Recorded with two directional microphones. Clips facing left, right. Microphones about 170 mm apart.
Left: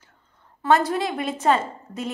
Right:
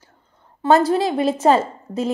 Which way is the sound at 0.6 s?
30° right (ahead or behind).